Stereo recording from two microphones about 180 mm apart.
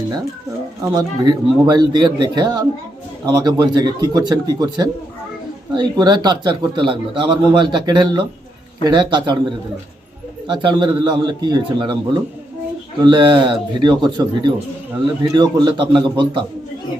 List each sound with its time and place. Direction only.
0.8 s a man's voice: 25° right (ahead or behind)
10.5 s a man's voice: 25° right (ahead or behind)